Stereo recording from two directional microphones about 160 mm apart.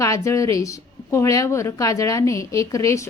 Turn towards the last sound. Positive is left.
turn(degrees=20)  # may be behind; listen again after turning